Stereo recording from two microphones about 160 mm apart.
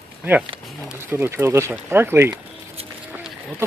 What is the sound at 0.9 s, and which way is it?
Speech, 10° right (ahead or behind).